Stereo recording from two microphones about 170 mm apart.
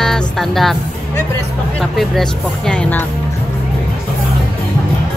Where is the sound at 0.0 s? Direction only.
Centre (ahead or behind).